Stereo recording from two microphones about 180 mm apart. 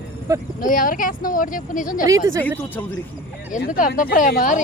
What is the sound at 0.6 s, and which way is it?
Speech, 50° left (ahead or behind).